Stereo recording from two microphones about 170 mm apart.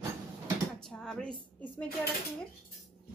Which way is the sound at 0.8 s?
5° left (ahead or behind).